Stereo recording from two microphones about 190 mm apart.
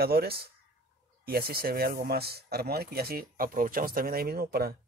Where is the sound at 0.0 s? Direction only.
55° right (ahead or behind).